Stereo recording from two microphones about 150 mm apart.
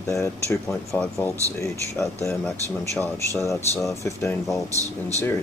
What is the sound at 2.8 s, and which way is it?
Speech, 20° left (ahead or behind).